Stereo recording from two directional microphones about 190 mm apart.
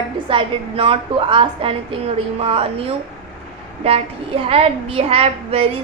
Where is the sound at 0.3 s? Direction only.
30° right (ahead or behind).